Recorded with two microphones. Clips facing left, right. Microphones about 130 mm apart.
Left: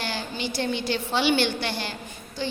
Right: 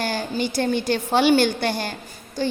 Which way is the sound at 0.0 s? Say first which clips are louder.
Right 6 dB; 45° right (ahead or behind).